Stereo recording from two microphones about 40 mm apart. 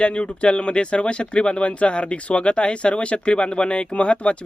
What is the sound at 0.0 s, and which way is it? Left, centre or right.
Speech, left.